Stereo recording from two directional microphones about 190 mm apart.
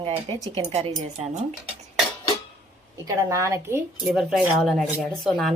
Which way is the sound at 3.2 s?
15° right (ahead or behind).